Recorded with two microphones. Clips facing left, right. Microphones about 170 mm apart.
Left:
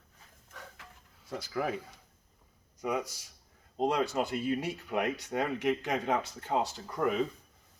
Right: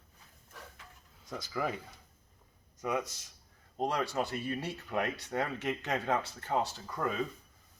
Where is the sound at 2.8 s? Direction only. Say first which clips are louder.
Left 1 dB; 10° left (ahead or behind).